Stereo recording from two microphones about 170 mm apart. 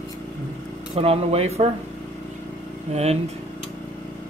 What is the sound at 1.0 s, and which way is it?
Speech, 35° right (ahead or behind).